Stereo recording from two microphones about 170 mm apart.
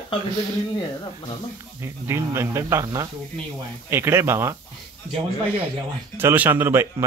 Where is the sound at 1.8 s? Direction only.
15° right (ahead or behind).